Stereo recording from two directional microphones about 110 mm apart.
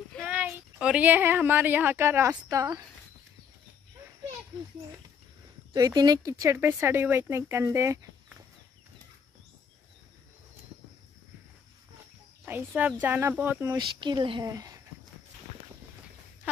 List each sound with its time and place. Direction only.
0.2 s speech: 10° right (ahead or behind); by 2.8 s 30° right (ahead or behind)
5.8 s speech: 35° right (ahead or behind)
12.4 s speech: 15° right (ahead or behind)
13.7 s speech: 45° right (ahead or behind)
14.4 s speech: 35° right (ahead or behind)